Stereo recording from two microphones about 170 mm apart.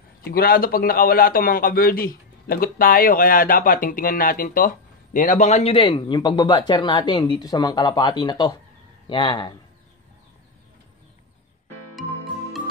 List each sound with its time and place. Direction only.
0.2 s a man's voice: 60° left (ahead or behind); by 9.6 s 30° left (ahead or behind)